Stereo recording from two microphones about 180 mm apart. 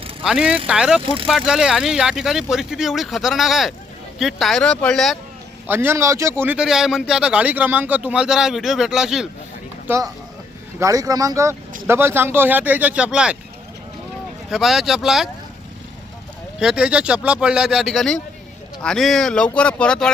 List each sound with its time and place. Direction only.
0.2 s a man's voice: 5° right (ahead or behind)
1.0 s speech: 30° right (ahead or behind)
1.3 s a man's voice: 5° right (ahead or behind)
5.6 s a man's voice: 10° right (ahead or behind)
9.8 s speech: 15° right (ahead or behind)
14.5 s a man's voice: centre (ahead or behind)
16.6 s a man's voice: 5° right (ahead or behind)